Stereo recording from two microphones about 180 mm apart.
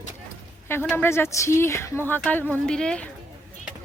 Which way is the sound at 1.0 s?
15° left (ahead or behind).